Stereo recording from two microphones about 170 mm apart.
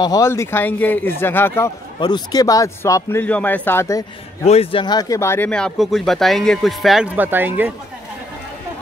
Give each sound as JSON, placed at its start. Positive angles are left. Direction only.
{"t": 0.0, "sound": "speech", "side_deg": 20}
{"t": 2.0, "sound": "speech", "side_deg": 25}
{"t": 4.5, "sound": "speech", "side_deg": 35}